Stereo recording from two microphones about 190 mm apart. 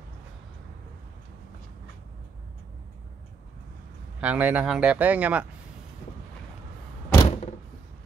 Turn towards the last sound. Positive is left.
turn(degrees=35)  # may be behind; listen again after turning